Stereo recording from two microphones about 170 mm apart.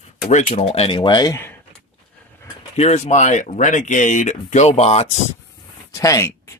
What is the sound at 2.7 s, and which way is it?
Speech, 40° left (ahead or behind).